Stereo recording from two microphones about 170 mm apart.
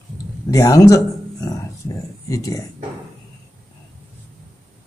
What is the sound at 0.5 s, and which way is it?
Speech, 20° left (ahead or behind).